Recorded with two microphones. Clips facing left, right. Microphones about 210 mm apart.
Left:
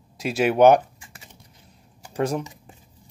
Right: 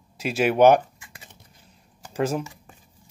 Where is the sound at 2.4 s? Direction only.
20° left (ahead or behind).